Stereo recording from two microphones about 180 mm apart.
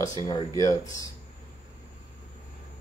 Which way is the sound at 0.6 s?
20° left (ahead or behind).